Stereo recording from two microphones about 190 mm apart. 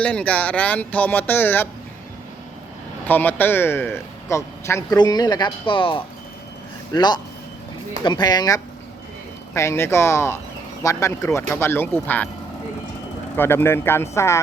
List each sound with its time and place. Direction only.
0.0 s speech: 5° left (ahead or behind)
3.1 s speech: 10° left (ahead or behind)
13.3 s speech: 10° left (ahead or behind)